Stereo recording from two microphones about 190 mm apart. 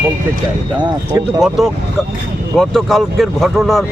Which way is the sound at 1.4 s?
Centre (ahead or behind).